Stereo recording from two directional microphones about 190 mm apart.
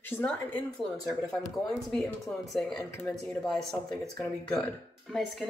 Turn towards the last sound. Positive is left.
turn(degrees=0)  # may be behind; listen again after turning